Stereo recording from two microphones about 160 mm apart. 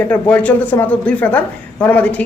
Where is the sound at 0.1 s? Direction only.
10° left (ahead or behind).